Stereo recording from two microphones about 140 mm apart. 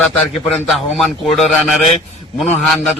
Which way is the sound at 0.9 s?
Centre (ahead or behind).